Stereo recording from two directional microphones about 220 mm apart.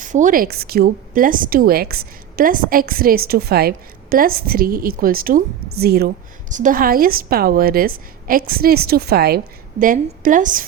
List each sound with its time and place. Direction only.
0.0 s a woman's voice: 35° right (ahead or behind)